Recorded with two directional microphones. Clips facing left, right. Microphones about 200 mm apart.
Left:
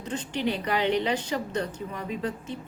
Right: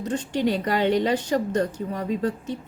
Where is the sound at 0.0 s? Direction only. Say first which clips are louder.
Right 5 dB; 45° right (ahead or behind).